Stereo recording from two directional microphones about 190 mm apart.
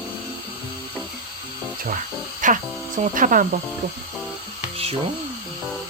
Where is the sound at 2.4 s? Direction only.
45° right (ahead or behind).